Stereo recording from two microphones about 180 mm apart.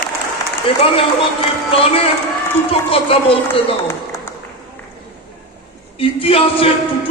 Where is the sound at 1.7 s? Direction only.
30° left (ahead or behind).